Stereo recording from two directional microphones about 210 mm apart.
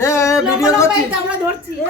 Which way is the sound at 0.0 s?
15° left (ahead or behind).